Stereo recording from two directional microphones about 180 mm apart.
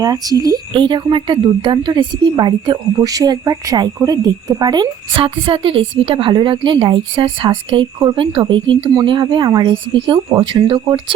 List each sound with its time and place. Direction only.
0.0 s speech: 20° right (ahead or behind)